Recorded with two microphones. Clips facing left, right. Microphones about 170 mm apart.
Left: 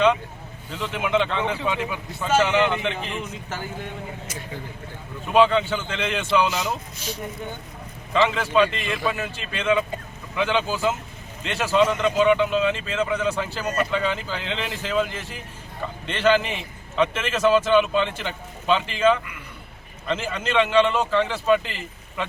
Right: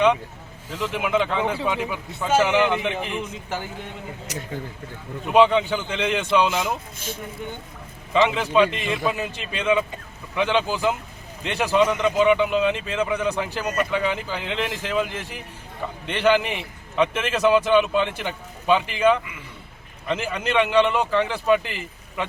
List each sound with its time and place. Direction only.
0.7 s speech: 10° right (ahead or behind)
5.3 s speech: 15° right (ahead or behind)
8.1 s speech: 15° right (ahead or behind)